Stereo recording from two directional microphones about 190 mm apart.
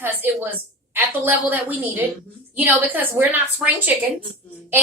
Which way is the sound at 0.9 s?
10° right (ahead or behind).